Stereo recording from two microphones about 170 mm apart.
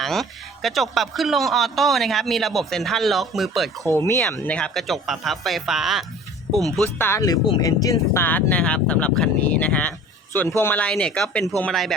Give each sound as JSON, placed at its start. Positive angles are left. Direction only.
{"t": 0.0, "sound": "a man's voice", "side_deg": 0}
{"t": 3.8, "sound": "speech", "side_deg": 15}
{"t": 4.2, "sound": "a man's voice", "side_deg": 5}
{"t": 6.8, "sound": "a man's voice", "side_deg": 15}